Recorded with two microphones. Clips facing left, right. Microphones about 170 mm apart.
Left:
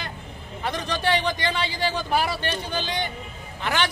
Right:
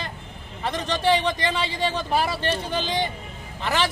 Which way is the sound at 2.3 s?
30° right (ahead or behind).